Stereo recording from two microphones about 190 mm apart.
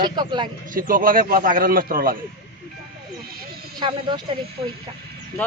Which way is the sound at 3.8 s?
25° right (ahead or behind).